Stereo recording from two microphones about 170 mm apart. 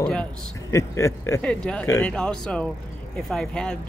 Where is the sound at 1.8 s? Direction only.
15° left (ahead or behind).